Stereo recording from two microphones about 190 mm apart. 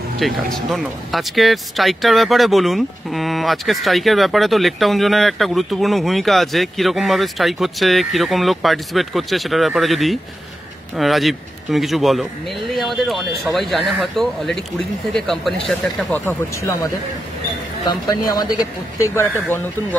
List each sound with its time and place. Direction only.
0.2 s speech: centre (ahead or behind)